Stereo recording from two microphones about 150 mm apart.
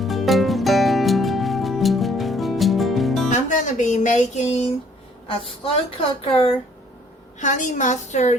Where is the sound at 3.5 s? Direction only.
55° left (ahead or behind).